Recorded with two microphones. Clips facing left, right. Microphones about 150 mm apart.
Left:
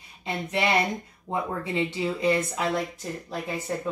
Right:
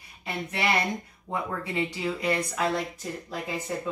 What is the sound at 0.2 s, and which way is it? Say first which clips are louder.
Speech: left 3 dB; 25° left (ahead or behind).